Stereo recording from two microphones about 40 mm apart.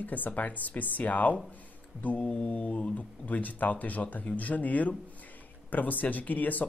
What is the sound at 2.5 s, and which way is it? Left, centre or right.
Speech, left.